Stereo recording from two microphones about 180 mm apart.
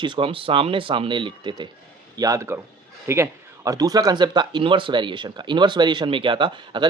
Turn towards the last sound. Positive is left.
turn(degrees=-25)  # may be behind; listen again after turning